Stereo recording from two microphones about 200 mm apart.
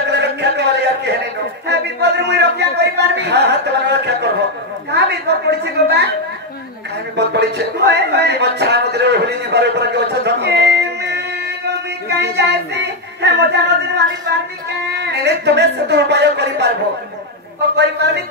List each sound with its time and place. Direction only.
0.0 s a sound: 60° right (ahead or behind)
1.7 s speech: 55° right (ahead or behind)
7.2 s speech: 55° right (ahead or behind)